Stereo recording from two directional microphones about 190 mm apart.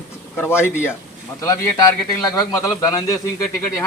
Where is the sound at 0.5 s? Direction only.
10° left (ahead or behind).